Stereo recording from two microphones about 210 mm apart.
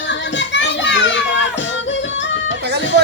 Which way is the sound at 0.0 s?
60° left (ahead or behind).